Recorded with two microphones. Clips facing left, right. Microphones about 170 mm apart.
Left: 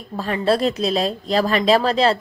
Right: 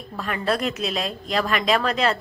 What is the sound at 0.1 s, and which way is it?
A woman's voice, 30° left (ahead or behind).